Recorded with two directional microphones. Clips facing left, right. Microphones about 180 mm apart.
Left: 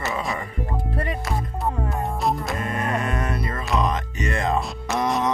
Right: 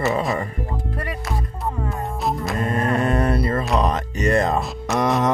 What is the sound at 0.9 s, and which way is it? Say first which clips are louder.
Speech: left 2 dB; 25° left (ahead or behind).